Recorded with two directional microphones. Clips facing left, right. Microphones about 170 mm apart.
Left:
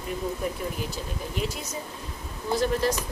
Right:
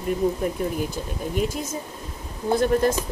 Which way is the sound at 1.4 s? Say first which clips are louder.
Right 6 dB; 50° right (ahead or behind).